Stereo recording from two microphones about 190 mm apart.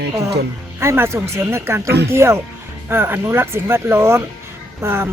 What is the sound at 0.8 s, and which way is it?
Speech, 15° right (ahead or behind).